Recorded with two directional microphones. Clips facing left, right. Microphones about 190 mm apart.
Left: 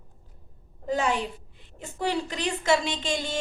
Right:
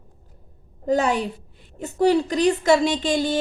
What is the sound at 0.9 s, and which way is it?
A woman's voice, 40° right (ahead or behind).